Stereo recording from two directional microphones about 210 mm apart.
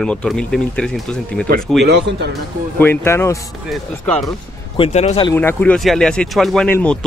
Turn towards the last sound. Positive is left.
turn(degrees=5)  # may be behind; listen again after turning